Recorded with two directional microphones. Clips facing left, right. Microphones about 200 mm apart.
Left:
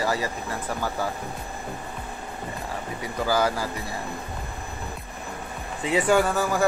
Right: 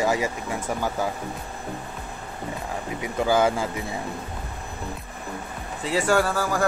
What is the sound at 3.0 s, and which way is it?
Speech, 20° right (ahead or behind).